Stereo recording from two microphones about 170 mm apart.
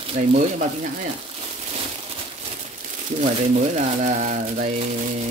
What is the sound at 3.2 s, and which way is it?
Speech, 45° right (ahead or behind).